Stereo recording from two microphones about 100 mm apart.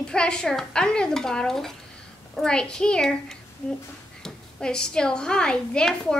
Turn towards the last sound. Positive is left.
turn(degrees=5)  # may be behind; listen again after turning